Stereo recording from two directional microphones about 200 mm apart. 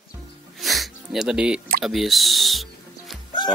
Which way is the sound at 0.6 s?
Centre (ahead or behind).